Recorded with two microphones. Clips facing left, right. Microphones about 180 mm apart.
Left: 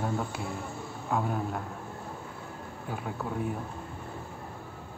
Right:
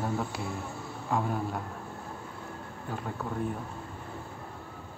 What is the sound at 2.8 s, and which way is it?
Speech, 5° left (ahead or behind).